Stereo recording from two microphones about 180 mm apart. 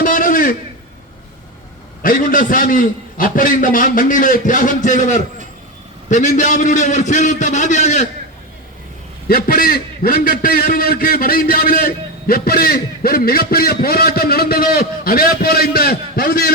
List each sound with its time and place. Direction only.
0.0 s a sound: 50° left (ahead or behind)
2.0 s a man's voice: 50° left (ahead or behind)
9.3 s a man's voice: 55° left (ahead or behind)